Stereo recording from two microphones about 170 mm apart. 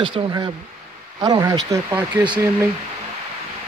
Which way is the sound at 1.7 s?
10° right (ahead or behind).